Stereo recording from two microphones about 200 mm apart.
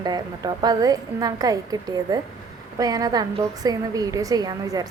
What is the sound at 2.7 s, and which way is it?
A woman's voice, 20° right (ahead or behind).